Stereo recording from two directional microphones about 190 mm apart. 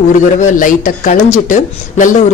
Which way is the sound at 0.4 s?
45° left (ahead or behind).